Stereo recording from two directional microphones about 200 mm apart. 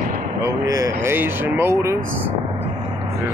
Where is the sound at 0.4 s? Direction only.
15° right (ahead or behind).